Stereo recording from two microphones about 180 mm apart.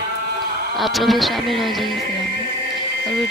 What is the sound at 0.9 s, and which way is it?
Insect, centre (ahead or behind).